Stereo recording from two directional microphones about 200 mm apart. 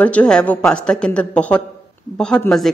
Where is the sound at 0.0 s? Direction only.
5° left (ahead or behind).